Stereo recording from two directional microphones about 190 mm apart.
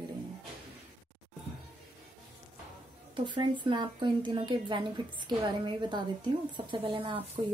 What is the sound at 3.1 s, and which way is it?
Speech, 25° right (ahead or behind).